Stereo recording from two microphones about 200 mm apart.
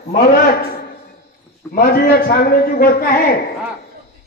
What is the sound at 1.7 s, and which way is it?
A man's voice, 50° left (ahead or behind).